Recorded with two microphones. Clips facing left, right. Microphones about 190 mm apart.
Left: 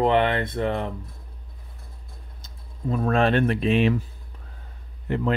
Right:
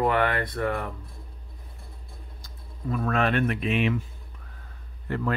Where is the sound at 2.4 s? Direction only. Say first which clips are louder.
Left 4 dB; 25° left (ahead or behind).